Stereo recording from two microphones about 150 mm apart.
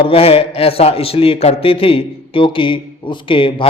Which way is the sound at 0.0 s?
40° left (ahead or behind).